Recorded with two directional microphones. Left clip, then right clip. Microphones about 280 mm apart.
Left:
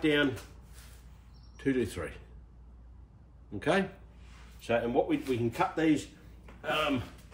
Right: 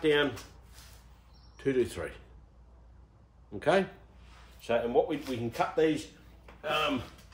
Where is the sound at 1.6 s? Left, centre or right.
Centre.